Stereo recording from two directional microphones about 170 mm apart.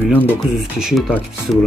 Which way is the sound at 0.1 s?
10° left (ahead or behind).